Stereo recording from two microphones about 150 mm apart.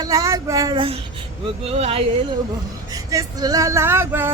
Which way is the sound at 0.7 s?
35° right (ahead or behind).